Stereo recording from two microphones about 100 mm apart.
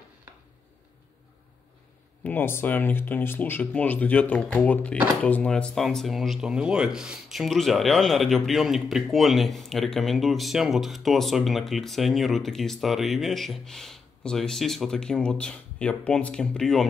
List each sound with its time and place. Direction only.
2.2 s speech: 20° left (ahead or behind)